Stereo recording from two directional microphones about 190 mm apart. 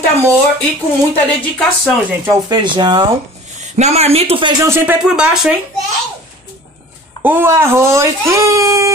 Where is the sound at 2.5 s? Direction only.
25° right (ahead or behind).